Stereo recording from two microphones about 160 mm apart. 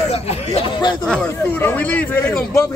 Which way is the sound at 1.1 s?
10° left (ahead or behind).